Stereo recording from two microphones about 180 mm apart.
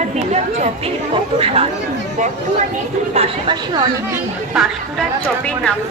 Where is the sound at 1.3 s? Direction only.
35° right (ahead or behind).